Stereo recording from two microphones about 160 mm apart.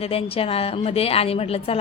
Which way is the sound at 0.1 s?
35° left (ahead or behind).